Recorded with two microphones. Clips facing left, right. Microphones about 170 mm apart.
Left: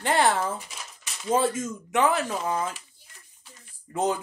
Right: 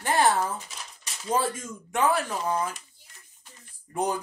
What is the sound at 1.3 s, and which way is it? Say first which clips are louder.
Speech: left 3 dB; 25° left (ahead or behind).